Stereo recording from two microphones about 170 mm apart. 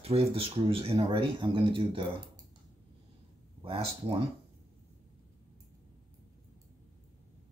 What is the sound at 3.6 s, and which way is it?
Speech, 35° right (ahead or behind).